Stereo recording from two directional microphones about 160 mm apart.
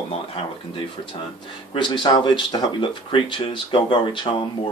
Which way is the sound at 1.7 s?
30° left (ahead or behind).